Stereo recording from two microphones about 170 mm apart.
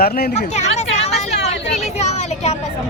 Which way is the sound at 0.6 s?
40° left (ahead or behind).